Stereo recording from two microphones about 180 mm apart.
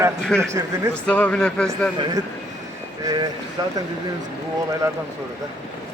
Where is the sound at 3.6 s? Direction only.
25° right (ahead or behind).